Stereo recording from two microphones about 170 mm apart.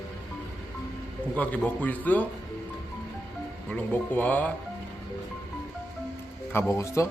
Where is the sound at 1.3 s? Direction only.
10° left (ahead or behind).